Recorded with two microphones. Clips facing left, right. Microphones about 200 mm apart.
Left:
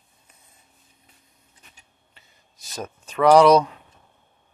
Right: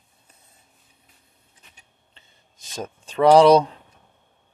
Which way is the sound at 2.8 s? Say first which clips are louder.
Right 2 dB; 30° right (ahead or behind).